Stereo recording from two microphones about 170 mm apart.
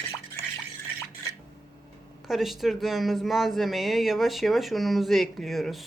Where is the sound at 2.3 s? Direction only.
Centre (ahead or behind).